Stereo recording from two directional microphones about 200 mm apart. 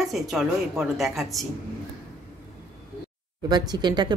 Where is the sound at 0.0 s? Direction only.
Centre (ahead or behind).